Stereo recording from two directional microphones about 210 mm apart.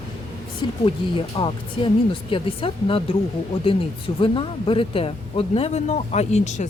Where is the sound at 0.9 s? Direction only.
25° left (ahead or behind).